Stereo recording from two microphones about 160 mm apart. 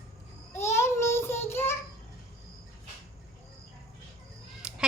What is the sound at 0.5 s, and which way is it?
Child singing, 15° left (ahead or behind).